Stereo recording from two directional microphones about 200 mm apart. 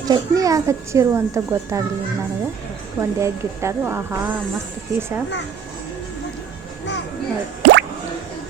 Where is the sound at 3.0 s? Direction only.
15° right (ahead or behind).